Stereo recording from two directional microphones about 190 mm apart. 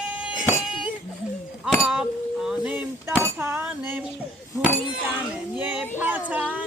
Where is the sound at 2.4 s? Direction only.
10° right (ahead or behind).